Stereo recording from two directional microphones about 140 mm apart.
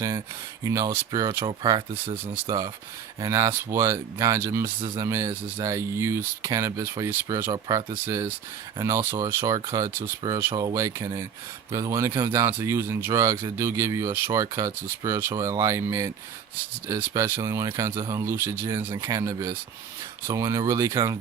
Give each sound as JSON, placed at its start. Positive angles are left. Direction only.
{"t": 0.6, "sound": "speech", "side_deg": -25}
{"t": 1.5, "sound": "speech", "side_deg": -35}
{"t": 7.5, "sound": "speech", "side_deg": -30}
{"t": 8.0, "sound": "speech", "side_deg": -20}
{"t": 18.9, "sound": "speech", "side_deg": -30}